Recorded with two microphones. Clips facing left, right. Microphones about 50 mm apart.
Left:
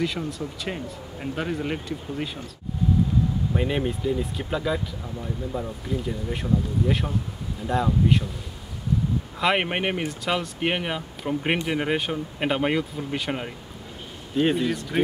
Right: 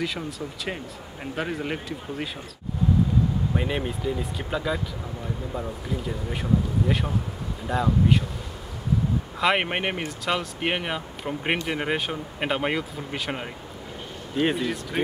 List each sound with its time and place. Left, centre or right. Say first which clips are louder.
0.0 s speech: left 2 dB; centre
3.5 s speech: left 2 dB; centre
9.4 s speech: even; centre